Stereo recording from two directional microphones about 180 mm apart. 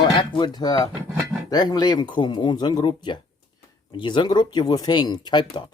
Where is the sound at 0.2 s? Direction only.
25° left (ahead or behind).